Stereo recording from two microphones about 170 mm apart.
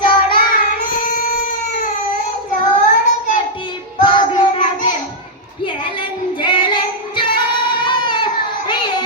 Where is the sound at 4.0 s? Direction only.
30° left (ahead or behind).